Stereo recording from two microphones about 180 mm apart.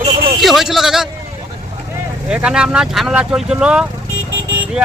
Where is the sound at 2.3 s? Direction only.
5° right (ahead or behind).